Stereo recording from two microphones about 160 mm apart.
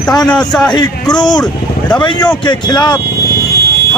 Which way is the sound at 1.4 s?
5° left (ahead or behind).